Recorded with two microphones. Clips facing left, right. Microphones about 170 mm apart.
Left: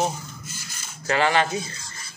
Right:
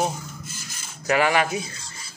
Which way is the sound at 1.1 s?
10° right (ahead or behind).